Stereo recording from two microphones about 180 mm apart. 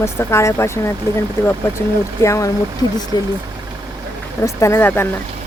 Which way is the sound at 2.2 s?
15° left (ahead or behind).